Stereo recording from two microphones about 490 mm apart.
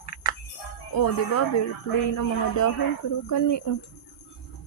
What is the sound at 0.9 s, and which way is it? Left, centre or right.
Speech, left.